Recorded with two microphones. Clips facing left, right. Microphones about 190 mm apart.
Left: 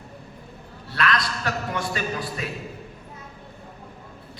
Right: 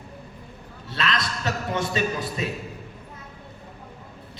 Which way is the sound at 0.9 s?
25° right (ahead or behind).